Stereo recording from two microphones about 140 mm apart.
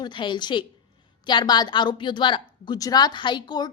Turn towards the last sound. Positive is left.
turn(degrees=30)  # may be behind; listen again after turning